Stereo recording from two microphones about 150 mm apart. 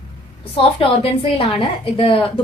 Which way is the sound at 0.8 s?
40° left (ahead or behind).